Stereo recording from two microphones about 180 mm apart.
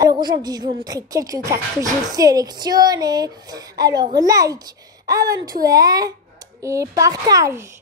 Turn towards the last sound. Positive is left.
turn(degrees=-20)  # may be behind; listen again after turning